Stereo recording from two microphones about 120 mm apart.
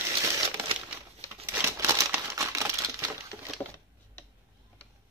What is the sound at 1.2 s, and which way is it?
Crumpling, 25° left (ahead or behind).